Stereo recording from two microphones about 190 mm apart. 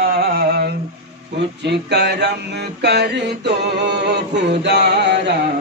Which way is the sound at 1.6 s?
60° right (ahead or behind).